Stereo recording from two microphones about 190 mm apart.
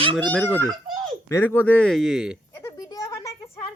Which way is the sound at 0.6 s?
20° right (ahead or behind).